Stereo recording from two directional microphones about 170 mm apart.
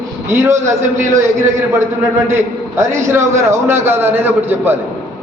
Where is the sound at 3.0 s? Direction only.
15° right (ahead or behind).